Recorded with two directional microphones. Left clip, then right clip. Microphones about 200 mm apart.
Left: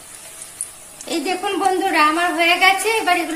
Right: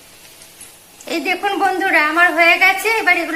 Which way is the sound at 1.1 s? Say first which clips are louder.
Right 3 dB; 10° left (ahead or behind).